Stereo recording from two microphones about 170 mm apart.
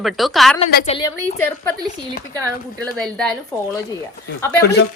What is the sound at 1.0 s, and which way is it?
Speech, 15° left (ahead or behind).